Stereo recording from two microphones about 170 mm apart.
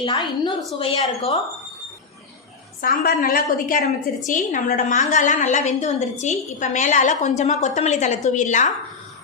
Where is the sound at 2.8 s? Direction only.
60° left (ahead or behind).